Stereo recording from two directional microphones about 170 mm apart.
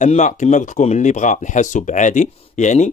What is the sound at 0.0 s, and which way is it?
Speech, 45° left (ahead or behind).